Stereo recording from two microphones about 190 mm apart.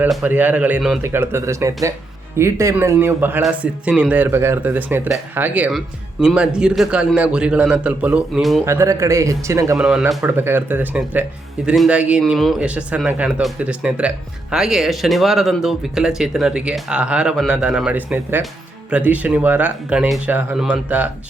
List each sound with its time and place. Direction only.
0.0 s speech: 5° right (ahead or behind)
8.6 s speech: 15° right (ahead or behind)
9.7 s speech: 5° right (ahead or behind)